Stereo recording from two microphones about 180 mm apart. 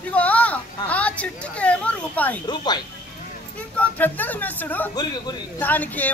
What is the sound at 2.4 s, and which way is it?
Speech, 25° left (ahead or behind).